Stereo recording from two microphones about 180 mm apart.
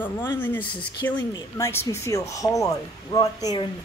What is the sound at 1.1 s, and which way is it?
Speech, 15° left (ahead or behind).